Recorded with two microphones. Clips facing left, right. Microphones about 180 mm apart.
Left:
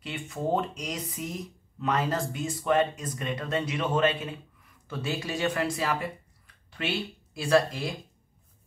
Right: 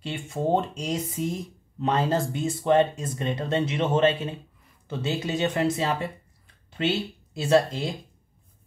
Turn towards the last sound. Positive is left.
turn(degrees=-25)  # may be behind; listen again after turning